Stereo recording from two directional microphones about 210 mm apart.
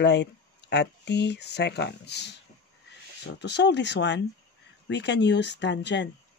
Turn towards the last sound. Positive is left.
turn(degrees=55)  # may be behind; listen again after turning